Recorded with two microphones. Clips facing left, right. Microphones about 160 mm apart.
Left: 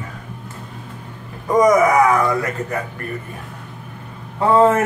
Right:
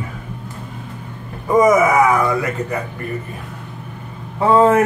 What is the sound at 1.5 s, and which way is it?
A man's voice, 5° right (ahead or behind).